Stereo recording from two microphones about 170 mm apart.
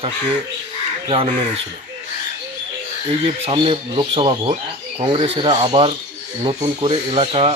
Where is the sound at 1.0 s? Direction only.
30° right (ahead or behind).